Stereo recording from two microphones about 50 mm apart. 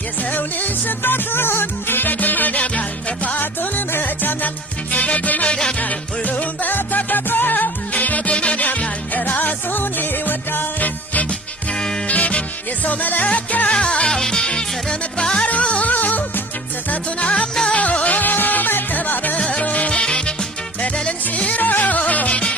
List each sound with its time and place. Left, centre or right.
0.2 s music: left
11.3 s music: centre
12.0 s music: left
13.7 s music: centre
15.4 s music: left
17.7 s music: left
19.4 s music: left